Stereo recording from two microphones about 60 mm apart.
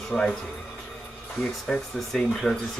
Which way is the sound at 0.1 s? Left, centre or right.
Centre.